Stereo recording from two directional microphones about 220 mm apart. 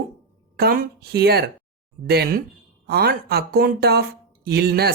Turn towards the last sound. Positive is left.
turn(degrees=-45)  # may be behind; listen again after turning